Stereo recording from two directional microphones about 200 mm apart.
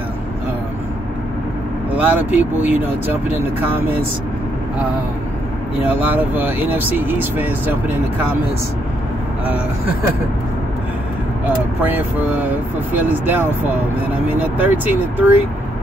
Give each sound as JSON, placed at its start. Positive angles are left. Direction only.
{"t": 2.0, "sound": "speech", "side_deg": -10}
{"t": 5.9, "sound": "speech", "side_deg": -10}
{"t": 11.8, "sound": "speech", "side_deg": -10}